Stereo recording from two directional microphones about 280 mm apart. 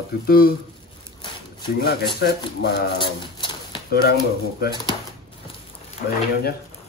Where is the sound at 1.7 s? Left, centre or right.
Left.